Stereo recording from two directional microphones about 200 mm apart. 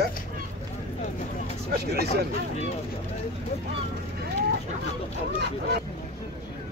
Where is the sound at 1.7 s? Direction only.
55° right (ahead or behind).